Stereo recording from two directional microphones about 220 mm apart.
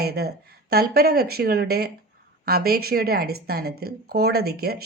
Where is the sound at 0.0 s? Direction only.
45° right (ahead or behind).